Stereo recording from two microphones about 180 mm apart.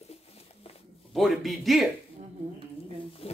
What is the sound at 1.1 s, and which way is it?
Speech, centre (ahead or behind).